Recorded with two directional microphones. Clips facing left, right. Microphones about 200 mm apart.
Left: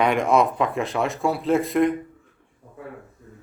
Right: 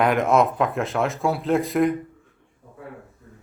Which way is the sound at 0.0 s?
Centre (ahead or behind).